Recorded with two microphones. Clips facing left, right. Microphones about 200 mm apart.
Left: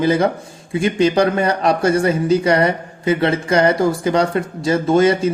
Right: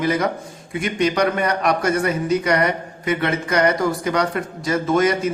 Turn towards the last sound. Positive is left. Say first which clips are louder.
# left 4 dB
turn(degrees=30)  # may be behind; listen again after turning